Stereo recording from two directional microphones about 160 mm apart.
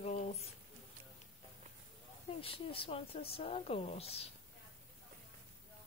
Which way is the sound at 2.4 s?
35° left (ahead or behind).